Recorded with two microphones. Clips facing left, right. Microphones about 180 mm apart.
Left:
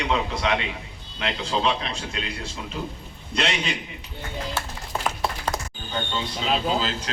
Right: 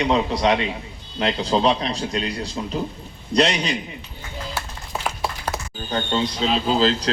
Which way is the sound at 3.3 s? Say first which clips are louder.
Right 7 dB; 40° right (ahead or behind).